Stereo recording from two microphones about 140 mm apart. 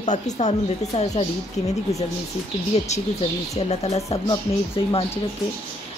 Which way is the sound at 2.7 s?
50° left (ahead or behind).